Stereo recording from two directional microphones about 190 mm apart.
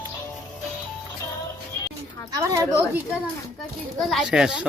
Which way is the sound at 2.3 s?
15° right (ahead or behind).